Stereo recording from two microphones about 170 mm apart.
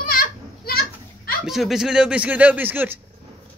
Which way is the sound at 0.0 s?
60° left (ahead or behind).